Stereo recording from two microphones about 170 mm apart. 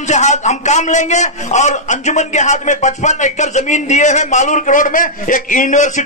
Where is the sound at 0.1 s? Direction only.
45° left (ahead or behind).